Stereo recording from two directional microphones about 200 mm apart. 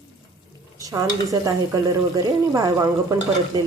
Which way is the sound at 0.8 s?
15° right (ahead or behind).